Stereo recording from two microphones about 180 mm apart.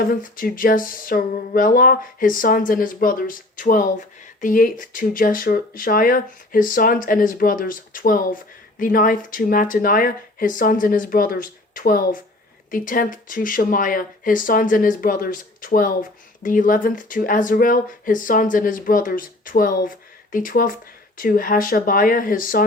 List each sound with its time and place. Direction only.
0.0 s speech: 50° left (ahead or behind)